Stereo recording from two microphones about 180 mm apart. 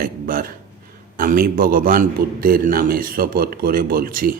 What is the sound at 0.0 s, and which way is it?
A man's voice, 55° right (ahead or behind).